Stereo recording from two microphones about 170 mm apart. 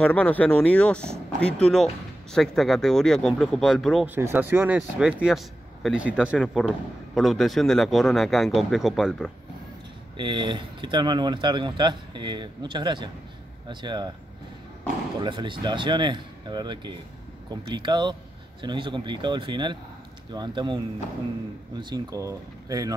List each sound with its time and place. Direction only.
0.0 s speech: 10° left (ahead or behind)
4.1 s speech: 10° right (ahead or behind)
10.1 s speech: 25° right (ahead or behind)
15.1 s speech: 30° right (ahead or behind)